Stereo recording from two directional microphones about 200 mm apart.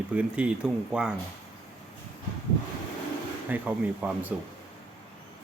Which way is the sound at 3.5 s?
10° right (ahead or behind).